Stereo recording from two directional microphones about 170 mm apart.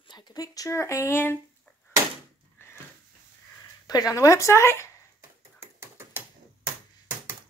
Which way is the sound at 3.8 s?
20° left (ahead or behind).